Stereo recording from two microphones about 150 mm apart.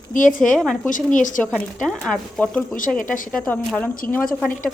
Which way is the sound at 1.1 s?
60° left (ahead or behind).